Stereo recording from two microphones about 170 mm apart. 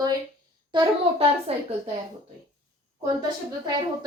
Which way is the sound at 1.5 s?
35° right (ahead or behind).